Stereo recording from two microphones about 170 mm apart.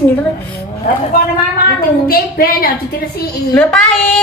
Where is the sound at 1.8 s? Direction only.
60° left (ahead or behind).